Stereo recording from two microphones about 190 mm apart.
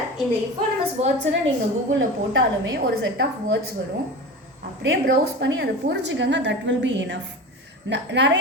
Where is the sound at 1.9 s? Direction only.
85° right.